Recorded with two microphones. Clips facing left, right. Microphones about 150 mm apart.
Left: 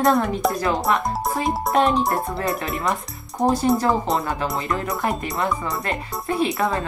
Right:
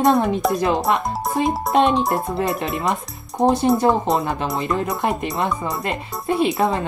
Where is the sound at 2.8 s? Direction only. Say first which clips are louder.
Right 2 dB; 20° right (ahead or behind).